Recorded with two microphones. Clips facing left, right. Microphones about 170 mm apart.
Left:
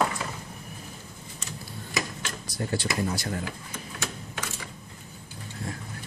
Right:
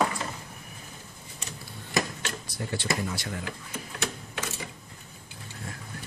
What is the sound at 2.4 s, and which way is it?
Speech, 40° left (ahead or behind).